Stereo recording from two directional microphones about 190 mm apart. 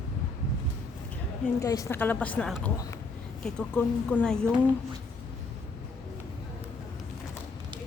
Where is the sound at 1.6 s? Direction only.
15° left (ahead or behind).